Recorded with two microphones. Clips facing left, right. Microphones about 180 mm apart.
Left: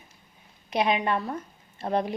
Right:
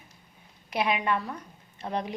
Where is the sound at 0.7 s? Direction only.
25° left (ahead or behind).